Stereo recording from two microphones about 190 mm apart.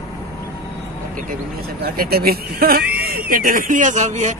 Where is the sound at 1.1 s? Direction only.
45° right (ahead or behind).